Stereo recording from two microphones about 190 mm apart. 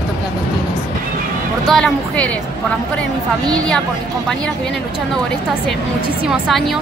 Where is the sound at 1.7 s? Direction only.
5° left (ahead or behind).